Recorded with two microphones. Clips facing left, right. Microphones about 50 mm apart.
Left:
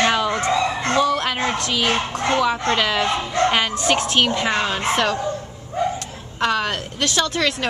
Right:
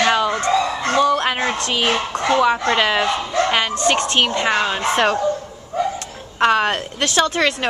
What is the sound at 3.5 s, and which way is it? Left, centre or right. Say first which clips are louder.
Speech: right 1 dB; centre.